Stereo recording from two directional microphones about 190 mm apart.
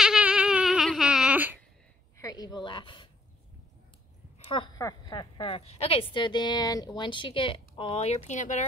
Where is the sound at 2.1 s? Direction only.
20° left (ahead or behind).